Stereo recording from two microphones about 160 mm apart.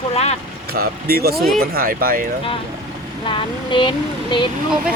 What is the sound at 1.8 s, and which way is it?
Speech, 65° right (ahead or behind).